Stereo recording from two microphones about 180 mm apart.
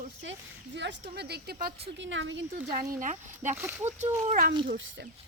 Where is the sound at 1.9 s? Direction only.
90° right.